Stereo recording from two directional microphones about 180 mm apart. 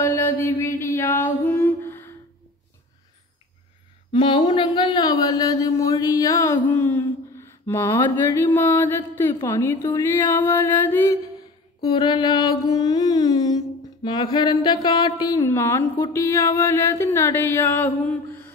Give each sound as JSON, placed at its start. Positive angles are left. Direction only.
{"t": 0.0, "sound": "mantra", "side_deg": 15}
{"t": 4.1, "sound": "speech", "side_deg": 25}
{"t": 11.9, "sound": "mantra", "side_deg": 25}
{"t": 14.0, "sound": "speech", "side_deg": 25}